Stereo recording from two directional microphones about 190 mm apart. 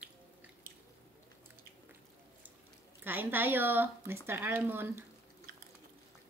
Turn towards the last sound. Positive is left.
turn(degrees=-10)  # may be behind; listen again after turning